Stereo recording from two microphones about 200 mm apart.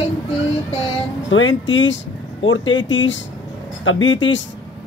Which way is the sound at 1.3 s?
70° left (ahead or behind).